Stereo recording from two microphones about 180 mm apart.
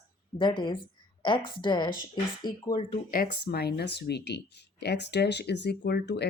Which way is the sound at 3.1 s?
55° left (ahead or behind).